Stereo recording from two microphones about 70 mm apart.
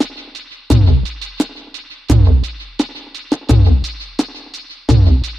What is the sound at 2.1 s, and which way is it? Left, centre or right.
Music, centre.